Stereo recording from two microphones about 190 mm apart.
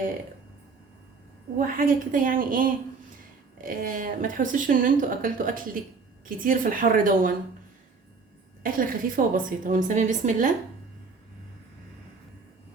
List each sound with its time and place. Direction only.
1.5 s speech: 45° right (ahead or behind)
8.6 s speech: 50° right (ahead or behind)